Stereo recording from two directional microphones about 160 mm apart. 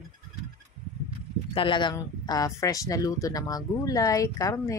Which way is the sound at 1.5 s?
30° left (ahead or behind).